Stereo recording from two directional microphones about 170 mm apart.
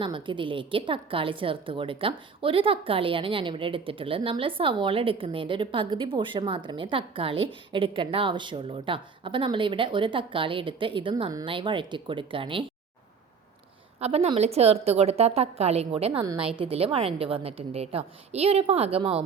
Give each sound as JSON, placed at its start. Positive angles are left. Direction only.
{"t": 0.0, "sound": "a woman's voice", "side_deg": -30}
{"t": 14.0, "sound": "a woman's voice", "side_deg": -35}